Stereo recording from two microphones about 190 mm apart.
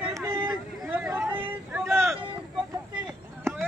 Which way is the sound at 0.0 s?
15° right (ahead or behind).